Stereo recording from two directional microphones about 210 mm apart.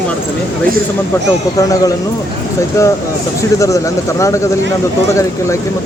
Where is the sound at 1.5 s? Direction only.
15° left (ahead or behind).